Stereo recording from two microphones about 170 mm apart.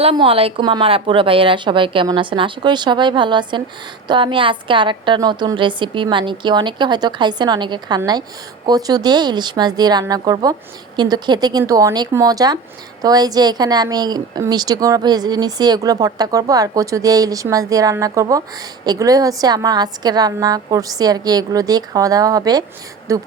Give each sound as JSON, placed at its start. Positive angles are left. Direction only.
{"t": 0.0, "sound": "a woman's voice", "side_deg": -35}